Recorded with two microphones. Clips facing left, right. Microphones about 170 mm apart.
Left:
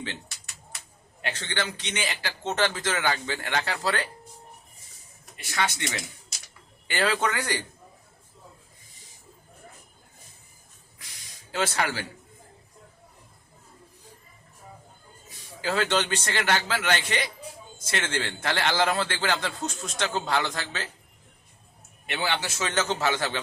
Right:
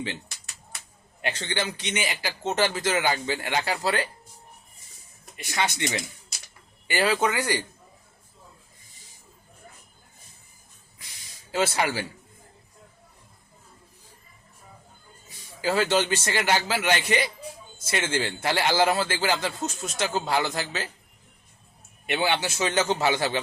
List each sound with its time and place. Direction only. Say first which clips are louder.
1.2 s a man's voice: right 2 dB; 15° right (ahead or behind)
5.4 s a man's voice: right 2 dB; 15° right (ahead or behind)
11.5 s a man's voice: right 3 dB; 10° right (ahead or behind)
15.6 s a man's voice: right 3 dB; 10° right (ahead or behind)
22.0 s a man's voice: right 4 dB; 15° right (ahead or behind)